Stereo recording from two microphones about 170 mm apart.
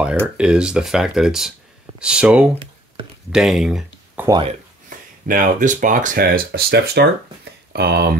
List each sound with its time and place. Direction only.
0.0 s speech: 5° right (ahead or behind)
4.3 s speech: 30° right (ahead or behind)
4.8 s speech: 55° right (ahead or behind); by 8.2 s 70° right (ahead or behind)